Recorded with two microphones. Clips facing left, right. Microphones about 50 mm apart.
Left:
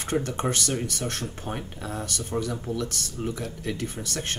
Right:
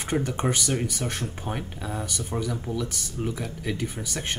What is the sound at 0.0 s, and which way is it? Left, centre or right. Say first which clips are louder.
Speech: right 1 dB; centre.